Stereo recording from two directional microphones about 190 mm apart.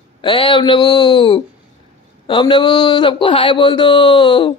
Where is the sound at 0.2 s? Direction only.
25° left (ahead or behind).